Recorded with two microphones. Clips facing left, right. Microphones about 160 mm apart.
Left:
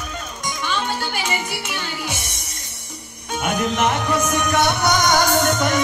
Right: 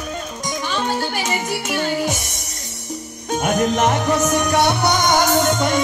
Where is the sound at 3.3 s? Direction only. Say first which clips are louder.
Right 4 dB; 45° right (ahead or behind); by 5.8 s 25° right (ahead or behind).